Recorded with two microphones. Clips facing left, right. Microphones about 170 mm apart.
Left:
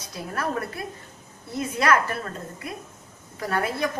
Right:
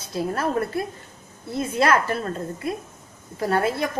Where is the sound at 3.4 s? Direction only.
25° right (ahead or behind).